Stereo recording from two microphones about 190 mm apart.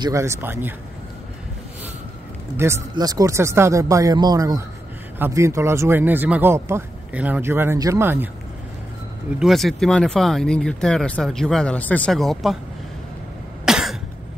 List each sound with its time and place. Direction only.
0.0 s speech: 15° right (ahead or behind)
2.5 s speech: 15° right (ahead or behind)
9.4 s speech: centre (ahead or behind)
13.7 s cough: 5° right (ahead or behind)